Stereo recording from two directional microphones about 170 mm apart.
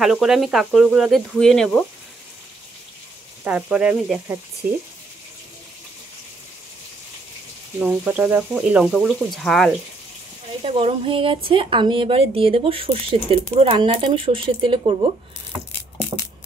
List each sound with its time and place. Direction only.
0.0 s speech: centre (ahead or behind)
3.4 s speech: 5° right (ahead or behind)
7.8 s speech: 10° right (ahead or behind)
10.6 s speech: 35° right (ahead or behind)